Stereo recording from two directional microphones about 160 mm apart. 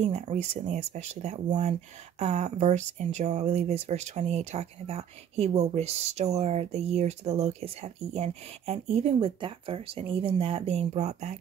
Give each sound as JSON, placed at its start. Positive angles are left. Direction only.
{"t": 0.0, "sound": "speech", "side_deg": -45}